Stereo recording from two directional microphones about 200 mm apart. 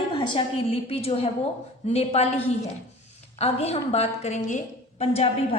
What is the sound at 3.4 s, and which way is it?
A woman's voice, 30° left (ahead or behind).